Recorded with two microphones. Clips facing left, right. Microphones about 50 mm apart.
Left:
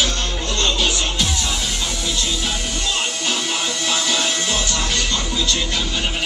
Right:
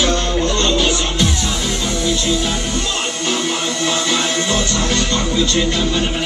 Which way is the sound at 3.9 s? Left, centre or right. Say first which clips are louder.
Right 2 dB; right.